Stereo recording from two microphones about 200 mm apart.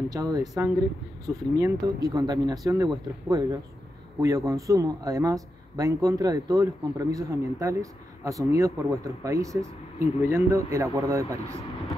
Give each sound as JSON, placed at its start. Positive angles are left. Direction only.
{"t": 0.1, "sound": "speech", "side_deg": -20}